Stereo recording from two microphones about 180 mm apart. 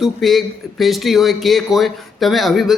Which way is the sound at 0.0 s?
Centre (ahead or behind).